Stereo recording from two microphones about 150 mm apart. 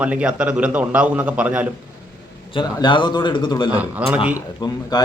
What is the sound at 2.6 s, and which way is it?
Speech, 30° left (ahead or behind).